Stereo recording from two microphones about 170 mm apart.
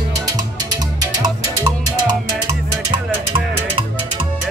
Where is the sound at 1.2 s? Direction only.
25° right (ahead or behind).